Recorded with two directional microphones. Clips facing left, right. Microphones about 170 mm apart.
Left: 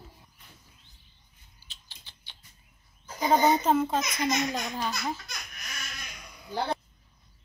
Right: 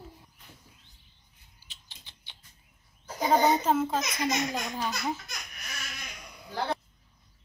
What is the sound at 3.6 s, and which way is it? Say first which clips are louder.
A child's voice: left 1 dB; 5° right (ahead or behind).